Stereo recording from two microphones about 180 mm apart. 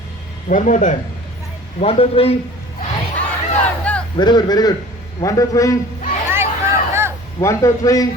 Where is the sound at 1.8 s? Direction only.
35° left (ahead or behind).